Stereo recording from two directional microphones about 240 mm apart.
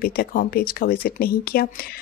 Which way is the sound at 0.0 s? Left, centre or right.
Left.